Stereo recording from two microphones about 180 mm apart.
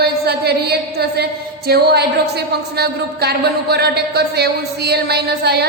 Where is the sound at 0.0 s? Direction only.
65° right (ahead or behind).